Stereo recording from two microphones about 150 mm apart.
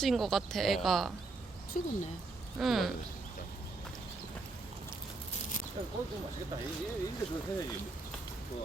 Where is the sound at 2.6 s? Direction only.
Centre (ahead or behind).